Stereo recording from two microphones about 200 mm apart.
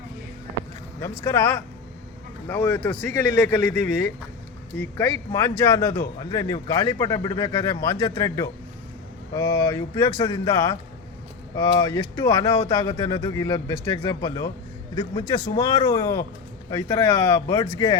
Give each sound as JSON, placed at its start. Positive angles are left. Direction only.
{"t": 1.2, "sound": "speech", "side_deg": 15}
{"t": 15.5, "sound": "speech", "side_deg": 20}